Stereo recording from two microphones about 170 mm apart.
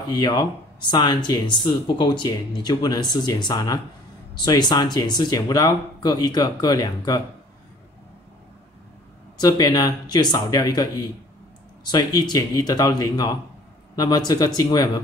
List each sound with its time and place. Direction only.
0.1 s speech: 25° left (ahead or behind)
9.4 s speech: 20° left (ahead or behind)